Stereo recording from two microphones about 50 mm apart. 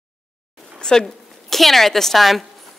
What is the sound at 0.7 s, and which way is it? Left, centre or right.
Speech, centre.